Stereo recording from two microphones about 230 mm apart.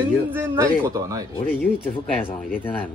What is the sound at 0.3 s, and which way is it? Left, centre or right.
Speech, centre.